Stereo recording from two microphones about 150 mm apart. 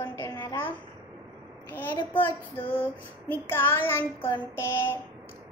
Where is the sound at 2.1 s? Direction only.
15° left (ahead or behind).